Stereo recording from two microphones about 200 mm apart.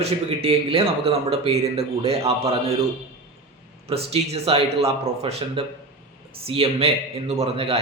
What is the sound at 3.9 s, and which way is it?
A man's voice, 30° right (ahead or behind).